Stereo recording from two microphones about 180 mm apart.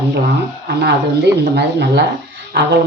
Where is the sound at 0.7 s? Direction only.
70° right (ahead or behind).